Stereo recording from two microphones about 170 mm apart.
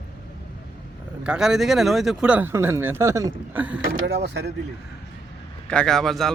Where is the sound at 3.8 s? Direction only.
65° right (ahead or behind).